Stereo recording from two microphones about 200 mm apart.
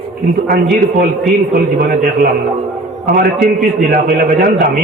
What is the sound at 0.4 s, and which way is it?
Speech, 50° right (ahead or behind).